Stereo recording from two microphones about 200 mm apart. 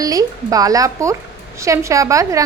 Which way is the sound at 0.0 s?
15° right (ahead or behind).